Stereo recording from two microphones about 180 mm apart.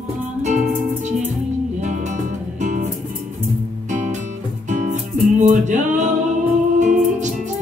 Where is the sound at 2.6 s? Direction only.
40° right (ahead or behind).